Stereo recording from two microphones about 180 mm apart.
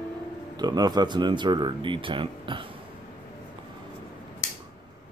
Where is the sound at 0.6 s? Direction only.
20° right (ahead or behind).